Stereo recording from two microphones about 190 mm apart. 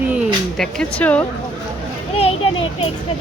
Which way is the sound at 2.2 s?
30° left (ahead or behind).